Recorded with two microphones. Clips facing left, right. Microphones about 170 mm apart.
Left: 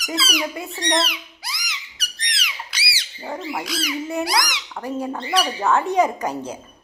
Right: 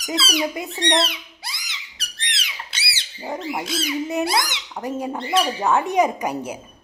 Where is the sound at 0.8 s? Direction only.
25° right (ahead or behind).